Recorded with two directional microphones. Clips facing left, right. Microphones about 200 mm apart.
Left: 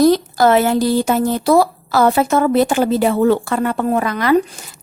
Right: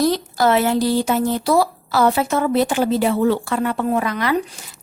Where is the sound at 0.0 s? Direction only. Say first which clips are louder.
Left 5 dB; 50° left (ahead or behind).